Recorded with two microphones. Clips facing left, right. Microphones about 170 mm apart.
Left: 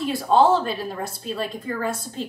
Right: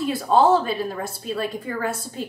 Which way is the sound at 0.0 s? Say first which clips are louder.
Even; centre (ahead or behind).